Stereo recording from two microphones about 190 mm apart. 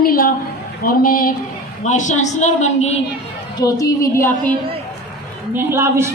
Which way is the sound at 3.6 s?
20° left (ahead or behind).